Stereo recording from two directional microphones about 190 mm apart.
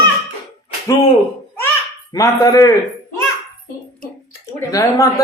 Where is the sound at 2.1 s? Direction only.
15° left (ahead or behind).